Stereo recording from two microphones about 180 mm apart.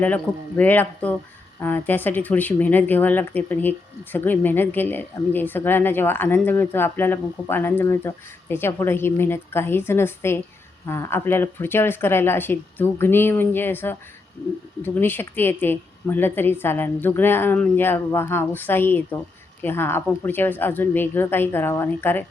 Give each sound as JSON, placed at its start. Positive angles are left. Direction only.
{"t": 0.0, "sound": "speech", "side_deg": 10}